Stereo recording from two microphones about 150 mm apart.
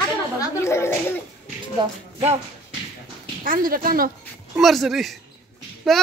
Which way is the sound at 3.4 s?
70° right (ahead or behind).